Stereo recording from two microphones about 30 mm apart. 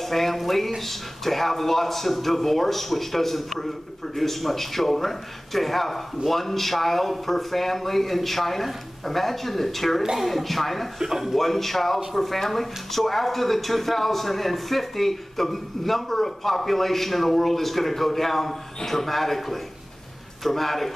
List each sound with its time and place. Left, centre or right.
0.0 s a man's voice: centre
11.0 s a man's voice: centre
11.3 s a man's voice: centre